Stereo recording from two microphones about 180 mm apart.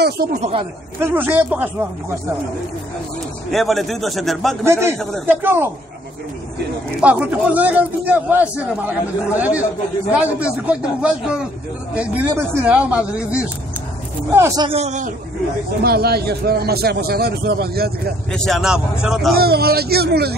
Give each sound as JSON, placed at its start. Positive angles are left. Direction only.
{"t": 0.3, "sound": "a man's voice", "side_deg": -35}
{"t": 0.9, "sound": "a man's voice", "side_deg": -10}
{"t": 3.5, "sound": "a man's voice", "side_deg": 0}
{"t": 4.6, "sound": "a man's voice", "side_deg": -15}
{"t": 7.0, "sound": "a man's voice", "side_deg": -5}
{"t": 14.6, "sound": "a man's voice", "side_deg": -35}
{"t": 15.8, "sound": "a man's voice", "side_deg": -60}
{"t": 18.3, "sound": "a man's voice", "side_deg": 0}
{"t": 19.3, "sound": "a man's voice", "side_deg": -60}